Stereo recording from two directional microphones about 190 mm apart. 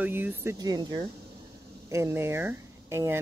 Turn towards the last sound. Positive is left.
turn(degrees=-15)  # may be behind; listen again after turning